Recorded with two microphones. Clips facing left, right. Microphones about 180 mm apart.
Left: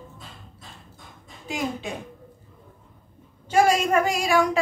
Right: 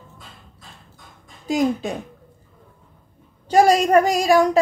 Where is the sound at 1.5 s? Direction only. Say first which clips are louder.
Right 10 dB; 40° right (ahead or behind).